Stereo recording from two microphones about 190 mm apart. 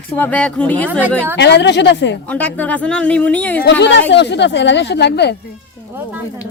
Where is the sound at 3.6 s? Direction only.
70° left (ahead or behind).